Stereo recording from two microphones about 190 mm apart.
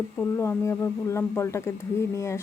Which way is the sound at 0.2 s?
15° left (ahead or behind).